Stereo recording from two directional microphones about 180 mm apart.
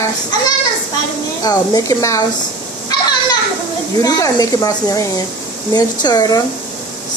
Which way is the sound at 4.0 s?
20° left (ahead or behind).